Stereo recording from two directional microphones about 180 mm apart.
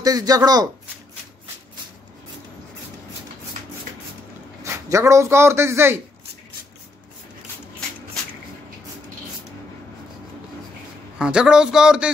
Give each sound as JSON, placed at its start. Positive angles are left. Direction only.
{"t": 0.0, "sound": "speech", "side_deg": -20}
{"t": 4.7, "sound": "a man's voice", "side_deg": -15}
{"t": 11.1, "sound": "a man's voice", "side_deg": -5}